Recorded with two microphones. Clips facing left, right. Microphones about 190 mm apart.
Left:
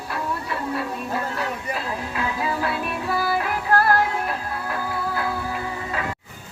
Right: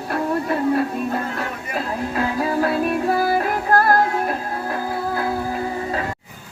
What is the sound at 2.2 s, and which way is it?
Music, 45° right (ahead or behind).